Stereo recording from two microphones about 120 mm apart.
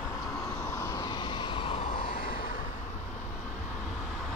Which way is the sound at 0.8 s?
35° left (ahead or behind).